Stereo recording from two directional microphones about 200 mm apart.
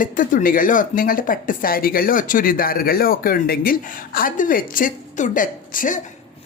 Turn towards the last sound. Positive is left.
turn(degrees=40)  # may be behind; listen again after turning